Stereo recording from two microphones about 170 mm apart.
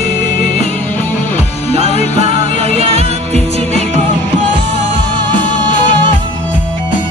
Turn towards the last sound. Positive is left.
turn(degrees=50)  # may be behind; listen again after turning